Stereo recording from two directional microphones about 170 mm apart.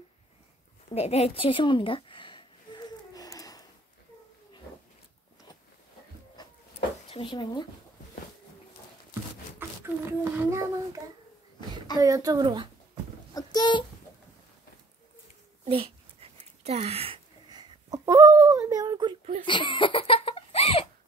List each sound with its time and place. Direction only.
0.8 s a sound: 40° left (ahead or behind); by 3.6 s 20° left (ahead or behind)
7.1 s speech: 30° left (ahead or behind)
9.6 s a child's voice: 15° right (ahead or behind)
12.0 s speech: 20° right (ahead or behind)
13.3 s speech: 25° left (ahead or behind)
15.6 s a sound: 35° right (ahead or behind)
19.4 s giggle: 30° left (ahead or behind)